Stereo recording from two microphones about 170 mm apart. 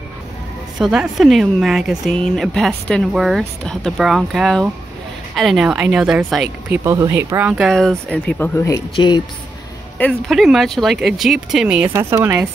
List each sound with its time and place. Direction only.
0.7 s speech: centre (ahead or behind)
6.7 s speech: 20° right (ahead or behind); by 9.2 s 25° left (ahead or behind)
9.9 s speech: 5° left (ahead or behind); by 12.4 s 15° right (ahead or behind)